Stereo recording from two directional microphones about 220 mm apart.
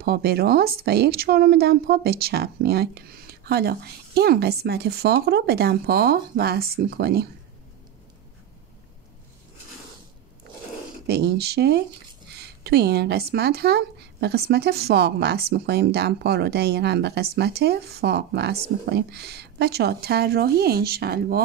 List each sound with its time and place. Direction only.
0.0 s speech: 45° right (ahead or behind)
11.1 s speech: 50° right (ahead or behind)